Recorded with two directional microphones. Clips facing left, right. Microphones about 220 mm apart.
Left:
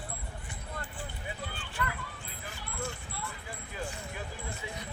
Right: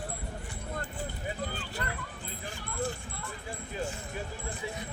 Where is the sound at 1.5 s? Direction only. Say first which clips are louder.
Even; 40° right (ahead or behind).